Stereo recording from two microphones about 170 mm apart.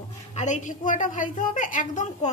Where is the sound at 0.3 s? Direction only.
45° left (ahead or behind).